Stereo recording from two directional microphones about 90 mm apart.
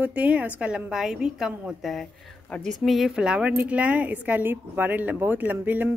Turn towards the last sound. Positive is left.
turn(degrees=-20)  # may be behind; listen again after turning